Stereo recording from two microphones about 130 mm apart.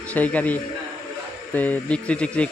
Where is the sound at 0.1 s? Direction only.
10° left (ahead or behind).